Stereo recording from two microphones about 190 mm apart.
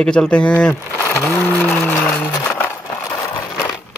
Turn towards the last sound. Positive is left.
turn(degrees=15)  # may be behind; listen again after turning